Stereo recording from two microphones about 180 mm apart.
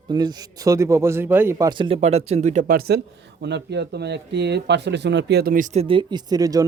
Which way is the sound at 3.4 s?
70° right (ahead or behind).